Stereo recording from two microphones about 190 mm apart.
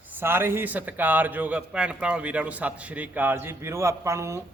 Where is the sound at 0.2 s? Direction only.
10° right (ahead or behind).